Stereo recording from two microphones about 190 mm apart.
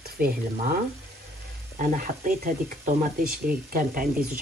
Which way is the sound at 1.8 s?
45° right (ahead or behind).